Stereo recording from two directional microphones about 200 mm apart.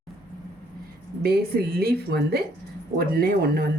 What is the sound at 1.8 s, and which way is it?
Speech, 50° right (ahead or behind).